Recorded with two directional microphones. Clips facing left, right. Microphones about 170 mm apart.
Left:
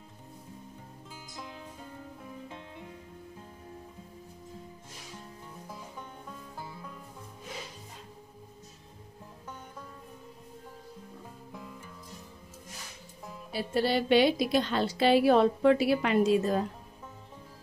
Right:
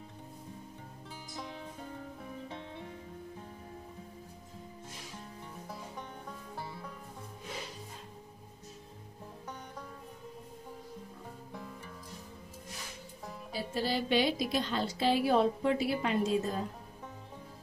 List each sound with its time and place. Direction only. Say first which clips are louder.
13.5 s a woman's voice: left 6 dB; 70° left (ahead or behind)